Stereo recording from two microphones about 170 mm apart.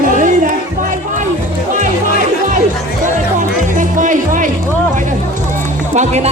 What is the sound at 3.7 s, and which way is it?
Music, 50° right (ahead or behind).